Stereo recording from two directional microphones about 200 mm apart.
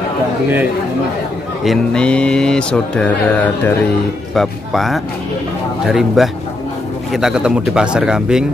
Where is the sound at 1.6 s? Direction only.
Centre (ahead or behind).